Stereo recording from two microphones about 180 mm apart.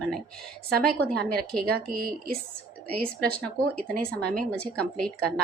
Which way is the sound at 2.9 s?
5° left (ahead or behind).